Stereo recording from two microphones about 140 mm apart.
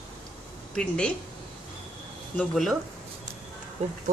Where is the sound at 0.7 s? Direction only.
5° left (ahead or behind).